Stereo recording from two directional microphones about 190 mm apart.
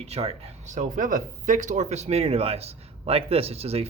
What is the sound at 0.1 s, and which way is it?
Speech, 30° right (ahead or behind).